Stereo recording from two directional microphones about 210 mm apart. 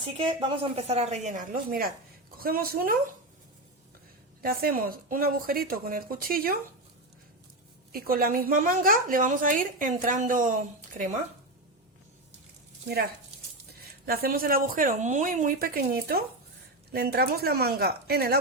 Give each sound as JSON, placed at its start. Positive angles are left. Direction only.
{"t": 0.2, "sound": "a woman's voice", "side_deg": -25}
{"t": 4.4, "sound": "a woman's voice", "side_deg": -45}
{"t": 7.9, "sound": "speech", "side_deg": -45}
{"t": 13.7, "sound": "a woman's voice", "side_deg": -45}